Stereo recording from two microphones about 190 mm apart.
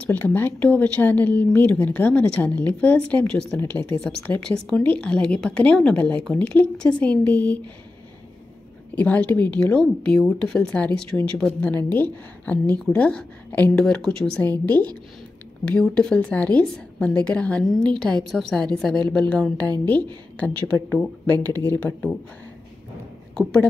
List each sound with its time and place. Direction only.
0.0 s speech: 10° left (ahead or behind)
8.9 s a woman's voice: 10° left (ahead or behind)
19.5 s a woman's voice: 20° right (ahead or behind)
19.9 s speech: 5° left (ahead or behind)
23.3 s a woman's voice: 5° left (ahead or behind)